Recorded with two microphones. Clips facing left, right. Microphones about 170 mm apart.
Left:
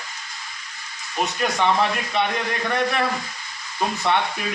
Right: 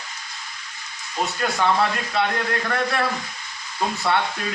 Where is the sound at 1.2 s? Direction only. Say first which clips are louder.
Left 1 dB; 15° left (ahead or behind).